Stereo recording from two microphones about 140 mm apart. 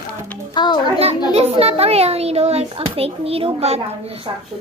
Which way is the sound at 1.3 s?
45° right (ahead or behind).